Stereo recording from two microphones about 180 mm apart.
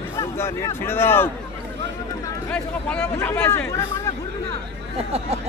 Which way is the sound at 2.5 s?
5° left (ahead or behind).